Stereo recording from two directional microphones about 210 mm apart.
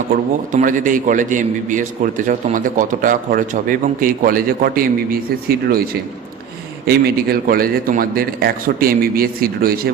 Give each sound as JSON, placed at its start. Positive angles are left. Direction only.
{"t": 0.5, "sound": "a man's voice", "side_deg": -40}
{"t": 6.8, "sound": "a man's voice", "side_deg": -45}